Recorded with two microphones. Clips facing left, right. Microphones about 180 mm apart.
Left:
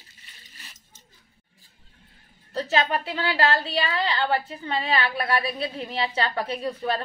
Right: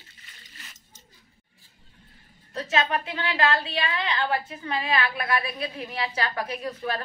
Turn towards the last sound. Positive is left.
turn(degrees=30)  # may be behind; listen again after turning